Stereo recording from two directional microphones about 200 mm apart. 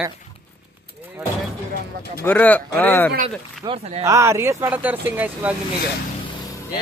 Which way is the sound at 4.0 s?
15° right (ahead or behind).